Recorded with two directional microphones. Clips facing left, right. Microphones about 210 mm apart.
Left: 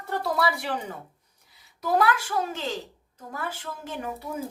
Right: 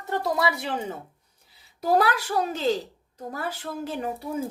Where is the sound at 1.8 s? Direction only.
35° right (ahead or behind).